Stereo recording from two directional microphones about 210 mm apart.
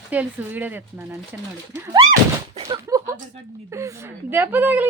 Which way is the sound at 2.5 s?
20° right (ahead or behind).